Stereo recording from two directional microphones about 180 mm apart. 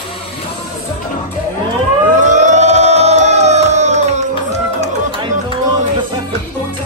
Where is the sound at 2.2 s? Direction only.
40° right (ahead or behind).